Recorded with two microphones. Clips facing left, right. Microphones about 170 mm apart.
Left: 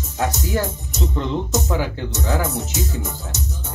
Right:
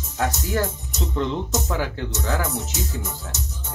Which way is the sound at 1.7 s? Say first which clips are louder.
Left 3 dB; 10° left (ahead or behind).